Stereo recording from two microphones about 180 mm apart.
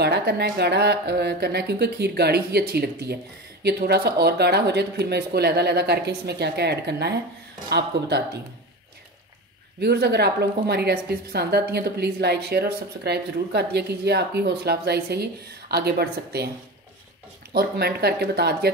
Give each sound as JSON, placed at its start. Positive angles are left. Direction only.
{"t": 0.0, "sound": "a woman's voice", "side_deg": -65}
{"t": 9.8, "sound": "a woman's voice", "side_deg": -65}
{"t": 17.5, "sound": "a woman's voice", "side_deg": -60}